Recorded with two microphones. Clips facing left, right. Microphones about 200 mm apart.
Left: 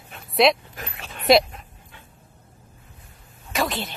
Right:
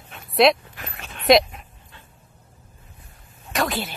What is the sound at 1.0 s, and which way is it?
Dog, centre (ahead or behind).